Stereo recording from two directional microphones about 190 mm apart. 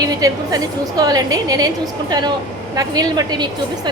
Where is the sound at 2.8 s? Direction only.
20° right (ahead or behind).